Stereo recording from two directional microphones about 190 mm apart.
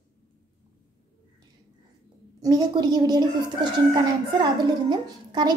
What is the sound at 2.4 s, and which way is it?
A woman's voice, 20° right (ahead or behind).